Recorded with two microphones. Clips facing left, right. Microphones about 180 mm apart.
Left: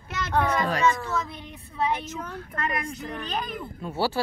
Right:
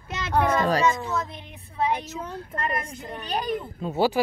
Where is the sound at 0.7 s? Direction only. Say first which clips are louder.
Right 1 dB; 30° right (ahead or behind).